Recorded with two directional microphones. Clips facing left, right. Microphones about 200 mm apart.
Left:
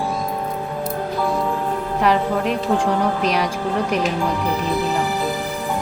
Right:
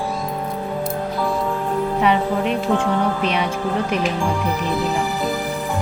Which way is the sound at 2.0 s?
Centre (ahead or behind).